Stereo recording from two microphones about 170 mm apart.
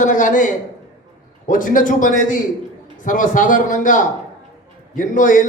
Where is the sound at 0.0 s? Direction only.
50° left (ahead or behind).